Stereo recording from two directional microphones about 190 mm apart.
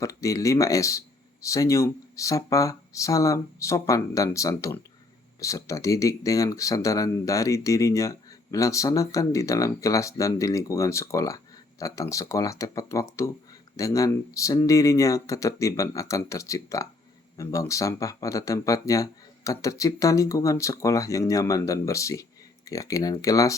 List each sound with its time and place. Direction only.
0.0 s speech: 15° left (ahead or behind)